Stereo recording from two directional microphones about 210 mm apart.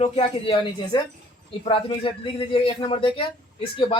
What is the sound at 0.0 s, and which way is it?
Speech, 25° left (ahead or behind).